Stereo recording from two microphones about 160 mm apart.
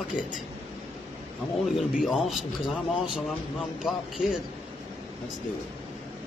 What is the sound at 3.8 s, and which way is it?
Speech, centre (ahead or behind).